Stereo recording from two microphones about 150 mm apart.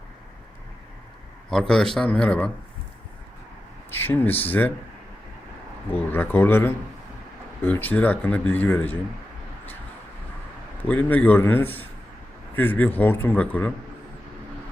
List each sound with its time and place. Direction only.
1.5 s a man's voice: 5° left (ahead or behind)
3.9 s speech: 15° left (ahead or behind)
5.9 s speech: 15° left (ahead or behind)
10.8 s speech: 10° left (ahead or behind)